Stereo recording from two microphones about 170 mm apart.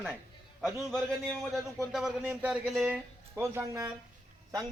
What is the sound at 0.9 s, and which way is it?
Speech, centre (ahead or behind).